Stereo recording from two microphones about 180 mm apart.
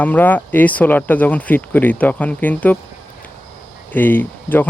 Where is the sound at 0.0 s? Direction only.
10° left (ahead or behind).